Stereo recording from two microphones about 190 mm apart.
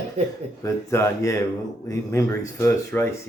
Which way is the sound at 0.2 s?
35° right (ahead or behind).